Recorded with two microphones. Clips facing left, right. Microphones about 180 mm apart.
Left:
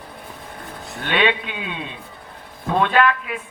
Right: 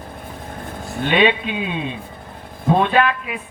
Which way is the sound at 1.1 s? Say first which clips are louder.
Right 3 dB; 20° right (ahead or behind).